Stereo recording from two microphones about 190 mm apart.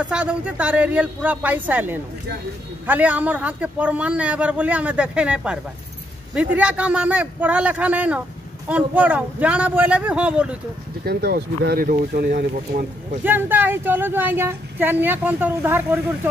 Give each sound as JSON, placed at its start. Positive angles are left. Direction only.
{"t": 0.1, "sound": "speech", "side_deg": -5}
{"t": 11.1, "sound": "speech", "side_deg": -55}
{"t": 13.2, "sound": "speech", "side_deg": -10}